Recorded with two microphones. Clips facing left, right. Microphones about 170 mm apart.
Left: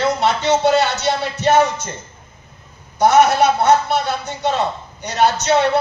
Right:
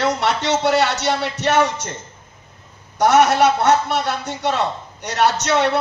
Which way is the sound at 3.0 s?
90° right.